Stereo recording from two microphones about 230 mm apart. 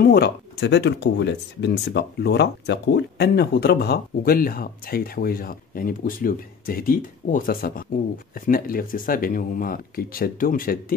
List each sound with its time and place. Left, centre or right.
0.0 s speech: left